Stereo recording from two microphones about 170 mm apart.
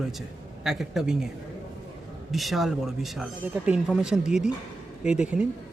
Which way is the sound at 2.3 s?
Centre (ahead or behind).